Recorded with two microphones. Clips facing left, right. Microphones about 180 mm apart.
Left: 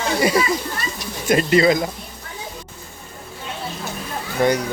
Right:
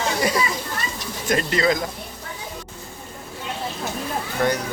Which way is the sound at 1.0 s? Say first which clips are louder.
Left 5 dB; 10° left (ahead or behind).